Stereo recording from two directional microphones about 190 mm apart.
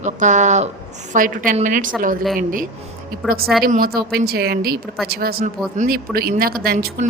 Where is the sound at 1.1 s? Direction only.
45° right (ahead or behind).